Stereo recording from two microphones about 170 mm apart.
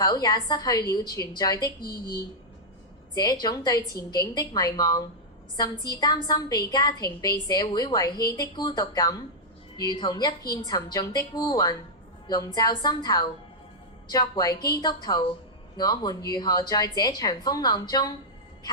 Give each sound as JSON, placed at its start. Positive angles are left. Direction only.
{"t": 0.0, "sound": "a woman's voice", "side_deg": 25}
{"t": 3.2, "sound": "a woman's voice", "side_deg": 25}